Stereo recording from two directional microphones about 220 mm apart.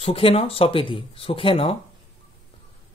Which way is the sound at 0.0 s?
25° left (ahead or behind).